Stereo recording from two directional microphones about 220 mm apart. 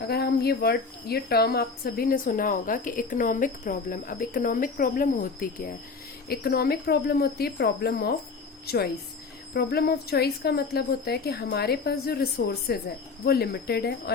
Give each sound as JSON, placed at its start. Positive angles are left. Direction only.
{"t": 0.1, "sound": "a woman's voice", "side_deg": 45}